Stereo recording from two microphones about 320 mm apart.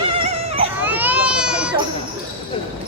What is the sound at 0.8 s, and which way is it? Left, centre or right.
Baby cry, centre.